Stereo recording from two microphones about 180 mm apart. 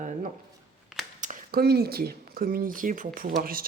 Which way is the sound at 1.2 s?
45° right (ahead or behind).